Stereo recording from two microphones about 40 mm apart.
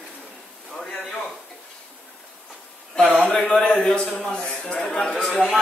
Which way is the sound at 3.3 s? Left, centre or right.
Left.